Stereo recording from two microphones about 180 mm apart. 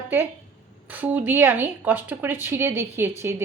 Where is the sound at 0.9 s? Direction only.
10° right (ahead or behind).